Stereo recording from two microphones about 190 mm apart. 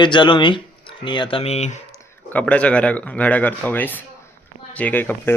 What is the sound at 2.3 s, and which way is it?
Speech, 5° left (ahead or behind).